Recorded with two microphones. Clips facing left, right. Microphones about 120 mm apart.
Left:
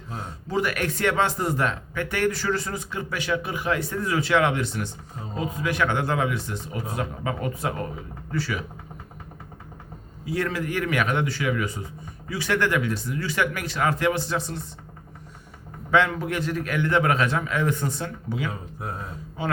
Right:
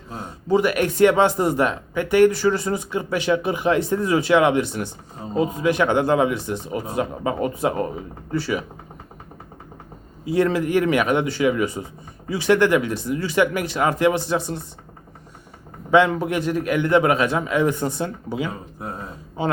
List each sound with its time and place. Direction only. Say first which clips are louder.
0.2 s speech: right 7 dB; 15° right (ahead or behind)
10.2 s speech: right 7 dB; 20° right (ahead or behind)
15.9 s speech: right 5 dB; 20° right (ahead or behind)